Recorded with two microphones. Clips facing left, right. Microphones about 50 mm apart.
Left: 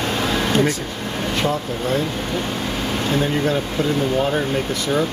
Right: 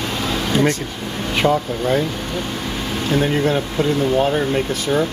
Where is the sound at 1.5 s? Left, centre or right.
Centre.